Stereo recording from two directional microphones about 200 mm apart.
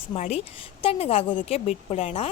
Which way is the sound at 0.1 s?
30° left (ahead or behind).